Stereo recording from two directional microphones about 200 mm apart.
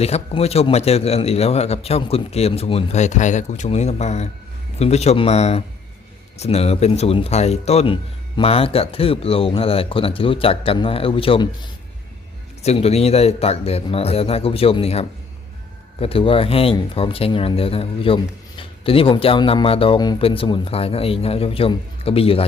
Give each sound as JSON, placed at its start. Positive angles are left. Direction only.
{"t": 0.0, "sound": "a man's voice", "side_deg": 30}